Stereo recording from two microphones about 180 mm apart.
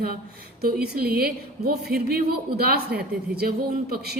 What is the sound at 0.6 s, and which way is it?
A woman's voice, 60° right (ahead or behind).